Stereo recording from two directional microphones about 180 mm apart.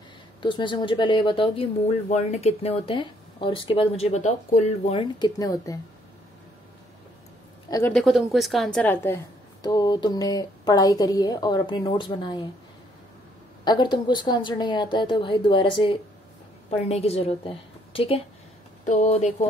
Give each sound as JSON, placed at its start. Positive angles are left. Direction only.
{"t": 0.4, "sound": "speech", "side_deg": 25}
{"t": 5.2, "sound": "a woman's voice", "side_deg": 20}
{"t": 7.9, "sound": "a woman's voice", "side_deg": 0}
{"t": 9.6, "sound": "a woman's voice", "side_deg": 20}
{"t": 13.7, "sound": "a woman's voice", "side_deg": 25}